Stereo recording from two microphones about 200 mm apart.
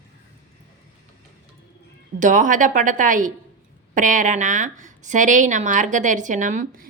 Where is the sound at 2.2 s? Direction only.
40° right (ahead or behind).